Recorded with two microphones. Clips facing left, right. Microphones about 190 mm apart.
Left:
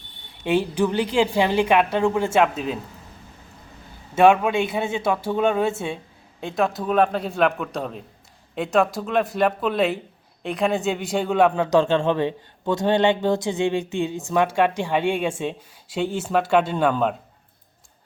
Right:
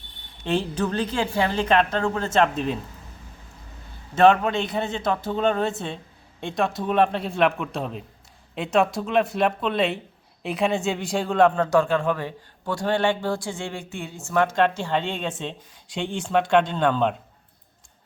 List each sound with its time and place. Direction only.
0.4 s speech: 10° left (ahead or behind)
4.1 s a man's voice: 10° left (ahead or behind)
11.8 s speech: 25° left (ahead or behind); by 17.2 s 5° left (ahead or behind)